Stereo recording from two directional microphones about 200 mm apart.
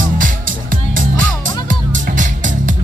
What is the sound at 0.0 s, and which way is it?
Music, 40° right (ahead or behind).